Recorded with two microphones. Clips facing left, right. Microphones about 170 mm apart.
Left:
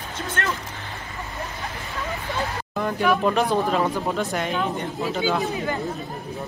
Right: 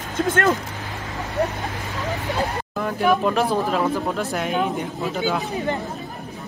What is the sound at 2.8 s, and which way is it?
Speech, centre (ahead or behind).